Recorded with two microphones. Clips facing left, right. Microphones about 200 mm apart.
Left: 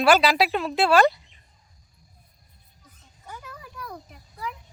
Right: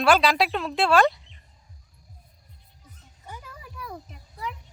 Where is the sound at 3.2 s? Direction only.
5° right (ahead or behind).